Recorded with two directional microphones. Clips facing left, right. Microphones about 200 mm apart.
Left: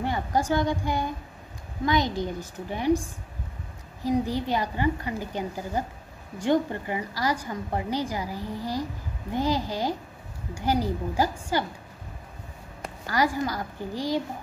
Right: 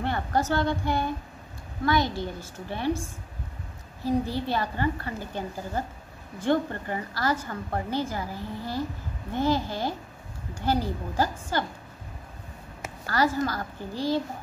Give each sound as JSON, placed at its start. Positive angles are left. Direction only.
{"t": 0.0, "sound": "a woman's voice", "side_deg": 10}
{"t": 13.0, "sound": "a woman's voice", "side_deg": 15}